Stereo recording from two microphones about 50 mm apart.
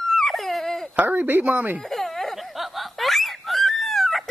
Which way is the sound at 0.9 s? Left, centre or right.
Right.